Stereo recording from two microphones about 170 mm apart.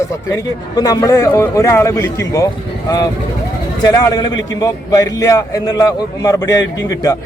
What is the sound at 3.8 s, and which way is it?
A man's voice, 20° left (ahead or behind).